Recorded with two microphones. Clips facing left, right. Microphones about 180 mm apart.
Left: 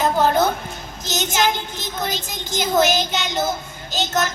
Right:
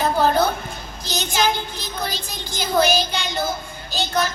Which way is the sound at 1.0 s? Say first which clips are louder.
Left 1 dB; 20° left (ahead or behind).